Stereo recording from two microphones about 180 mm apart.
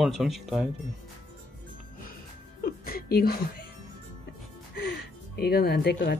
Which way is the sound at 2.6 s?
55° left (ahead or behind).